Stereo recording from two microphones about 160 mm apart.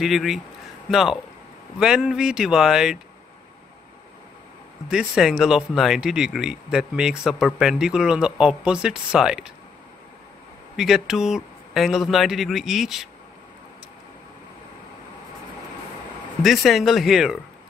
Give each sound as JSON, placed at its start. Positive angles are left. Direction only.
{"t": 0.0, "sound": "speech", "side_deg": 0}
{"t": 4.8, "sound": "speech", "side_deg": -5}
{"t": 10.8, "sound": "speech", "side_deg": 0}
{"t": 16.4, "sound": "speech", "side_deg": 0}